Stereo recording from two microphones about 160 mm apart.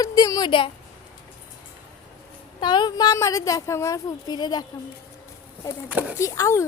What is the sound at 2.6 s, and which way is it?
Speech, 25° left (ahead or behind).